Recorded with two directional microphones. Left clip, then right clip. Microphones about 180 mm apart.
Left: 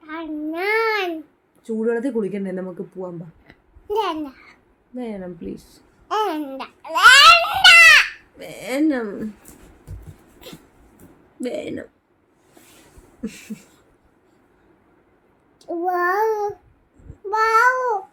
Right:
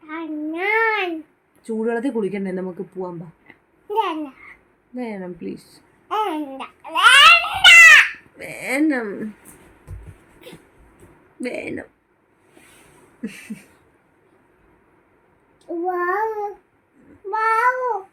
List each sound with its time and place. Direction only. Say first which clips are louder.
0.1 s child singing: even; 15° left (ahead or behind)
1.6 s speech: left 1 dB; 20° right (ahead or behind)
3.8 s babbling: right 1 dB; 20° left (ahead or behind)
4.9 s speech: right 1 dB; 15° right (ahead or behind)
6.1 s babbling: left 1 dB; 25° left (ahead or behind)
8.4 s speech: right 1 dB; 15° right (ahead or behind)
13.2 s a sound: even; 5° right (ahead or behind)
15.6 s child singing: left 2 dB; 25° left (ahead or behind)